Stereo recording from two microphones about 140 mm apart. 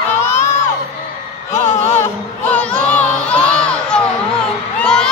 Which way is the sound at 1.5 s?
15° left (ahead or behind).